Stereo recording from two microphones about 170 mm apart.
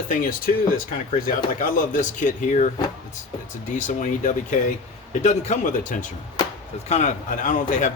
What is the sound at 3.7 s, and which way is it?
A man's voice, 45° left (ahead or behind).